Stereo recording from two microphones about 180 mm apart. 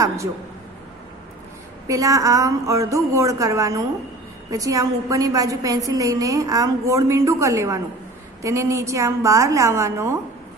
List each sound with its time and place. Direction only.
0.0 s a woman's voice: 15° right (ahead or behind)
1.9 s a woman's voice: 20° right (ahead or behind)